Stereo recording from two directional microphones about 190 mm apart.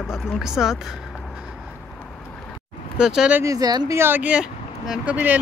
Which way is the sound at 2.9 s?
5° right (ahead or behind).